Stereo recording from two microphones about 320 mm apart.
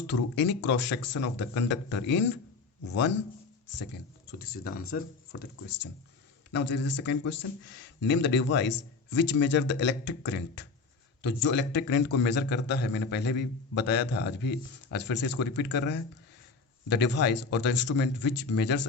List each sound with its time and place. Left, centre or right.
0.1 s a man's voice: left
4.3 s a man's voice: left
16.9 s a man's voice: left